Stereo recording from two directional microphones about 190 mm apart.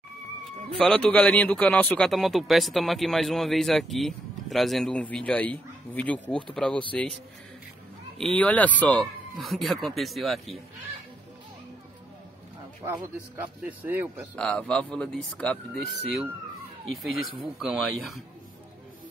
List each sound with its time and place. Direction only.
0.7 s a man's voice: 5° left (ahead or behind)
8.2 s a man's voice: 5° left (ahead or behind)
13.4 s speech: 10° right (ahead or behind)
14.3 s a man's voice: 5° left (ahead or behind)
17.6 s a man's voice: centre (ahead or behind)